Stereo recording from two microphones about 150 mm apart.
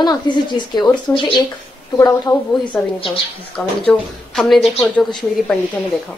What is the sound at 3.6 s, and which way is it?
A woman's voice, 5° left (ahead or behind).